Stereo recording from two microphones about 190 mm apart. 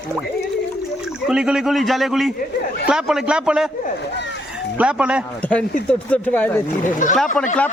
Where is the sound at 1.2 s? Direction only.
5° right (ahead or behind).